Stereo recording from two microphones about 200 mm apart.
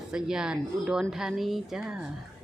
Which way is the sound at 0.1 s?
5° right (ahead or behind).